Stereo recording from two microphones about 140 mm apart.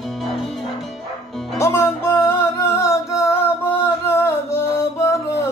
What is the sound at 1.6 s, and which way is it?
Music, 20° left (ahead or behind).